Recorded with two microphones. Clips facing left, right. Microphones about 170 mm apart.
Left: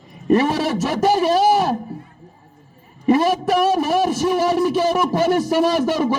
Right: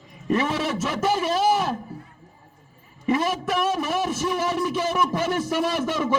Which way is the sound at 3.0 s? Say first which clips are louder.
Left 7 dB; 35° left (ahead or behind).